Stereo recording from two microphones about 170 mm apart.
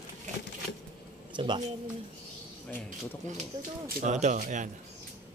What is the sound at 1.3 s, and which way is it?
Speech, 25° right (ahead or behind).